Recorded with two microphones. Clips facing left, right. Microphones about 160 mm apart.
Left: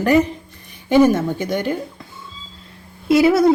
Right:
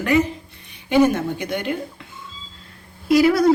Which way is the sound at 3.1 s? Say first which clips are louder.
Left 2 dB; 25° left (ahead or behind).